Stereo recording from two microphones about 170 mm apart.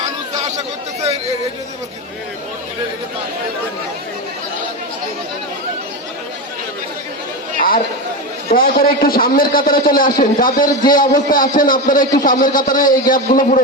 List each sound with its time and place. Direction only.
8.4 s a man's voice: 55° left (ahead or behind)